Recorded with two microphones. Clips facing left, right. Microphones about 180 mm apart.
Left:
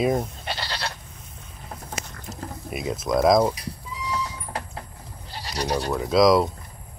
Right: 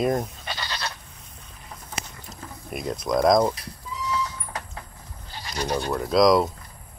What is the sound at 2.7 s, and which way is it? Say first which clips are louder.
Speech: left 1 dB; 5° left (ahead or behind).